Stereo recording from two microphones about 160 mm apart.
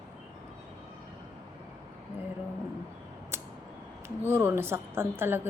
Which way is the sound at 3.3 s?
15° right (ahead or behind).